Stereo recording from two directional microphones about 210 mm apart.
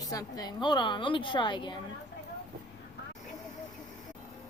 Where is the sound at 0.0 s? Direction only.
15° left (ahead or behind).